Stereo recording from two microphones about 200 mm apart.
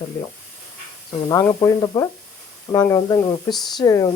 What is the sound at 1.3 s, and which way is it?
Speech, 15° left (ahead or behind).